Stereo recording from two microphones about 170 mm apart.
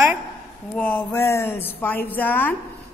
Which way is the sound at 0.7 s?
10° left (ahead or behind).